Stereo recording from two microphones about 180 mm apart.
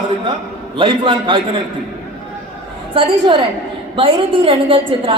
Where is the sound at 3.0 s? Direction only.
30° right (ahead or behind).